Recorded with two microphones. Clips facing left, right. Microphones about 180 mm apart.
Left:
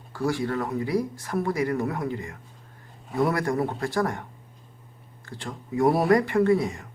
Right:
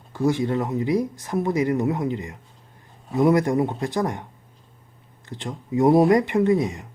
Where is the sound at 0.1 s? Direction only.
20° right (ahead or behind).